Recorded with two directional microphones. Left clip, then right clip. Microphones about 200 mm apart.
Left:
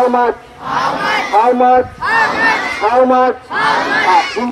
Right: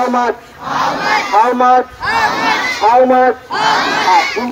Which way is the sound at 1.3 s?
50° left (ahead or behind).